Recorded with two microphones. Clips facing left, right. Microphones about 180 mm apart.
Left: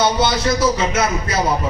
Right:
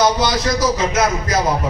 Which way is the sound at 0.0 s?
25° left (ahead or behind).